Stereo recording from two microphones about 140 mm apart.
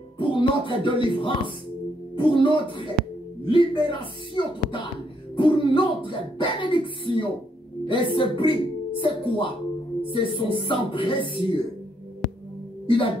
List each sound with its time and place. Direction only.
0.2 s speech: 35° left (ahead or behind)
12.8 s speech: 35° left (ahead or behind)